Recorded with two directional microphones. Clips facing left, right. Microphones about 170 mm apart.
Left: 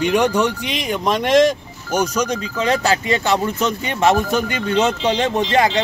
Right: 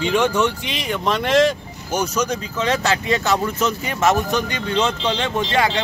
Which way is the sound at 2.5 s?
35° left (ahead or behind).